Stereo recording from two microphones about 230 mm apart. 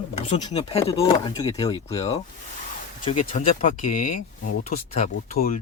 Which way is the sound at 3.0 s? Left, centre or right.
Left.